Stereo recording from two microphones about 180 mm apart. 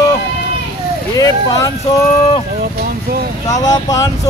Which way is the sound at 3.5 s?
20° left (ahead or behind).